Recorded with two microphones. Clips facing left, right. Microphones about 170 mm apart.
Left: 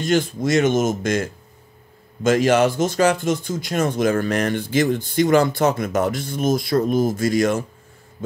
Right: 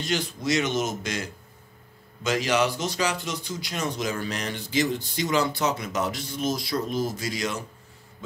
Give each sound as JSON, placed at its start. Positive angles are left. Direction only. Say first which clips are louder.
{"t": 0.0, "sound": "speech", "louder": "left 8 dB", "side_deg": 50}